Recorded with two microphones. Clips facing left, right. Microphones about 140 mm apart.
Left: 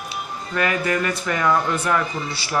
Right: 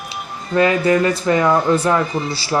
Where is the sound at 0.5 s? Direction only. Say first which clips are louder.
Right 8 dB; 25° right (ahead or behind).